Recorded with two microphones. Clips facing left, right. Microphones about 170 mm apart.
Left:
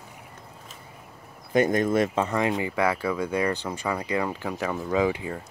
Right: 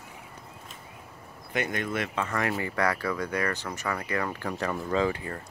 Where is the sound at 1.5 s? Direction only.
40° left (ahead or behind).